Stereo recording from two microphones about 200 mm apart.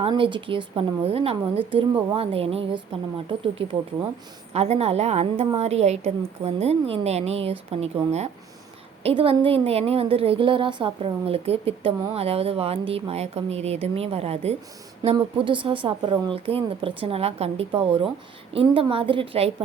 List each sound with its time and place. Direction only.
0.0 s a woman's voice: 25° right (ahead or behind)
9.0 s a woman's voice: 30° right (ahead or behind)